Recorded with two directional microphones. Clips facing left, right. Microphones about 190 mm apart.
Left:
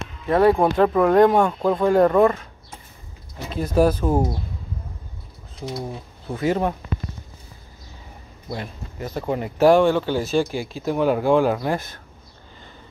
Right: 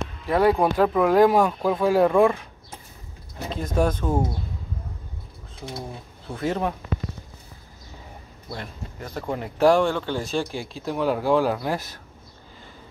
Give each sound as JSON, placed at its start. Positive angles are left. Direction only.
{"t": 0.3, "sound": "speech", "side_deg": 0}
{"t": 3.5, "sound": "speech", "side_deg": 5}
{"t": 6.3, "sound": "speech", "side_deg": 5}
{"t": 8.5, "sound": "speech", "side_deg": 10}